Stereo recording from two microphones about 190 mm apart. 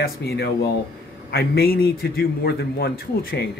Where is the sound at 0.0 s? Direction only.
55° left (ahead or behind).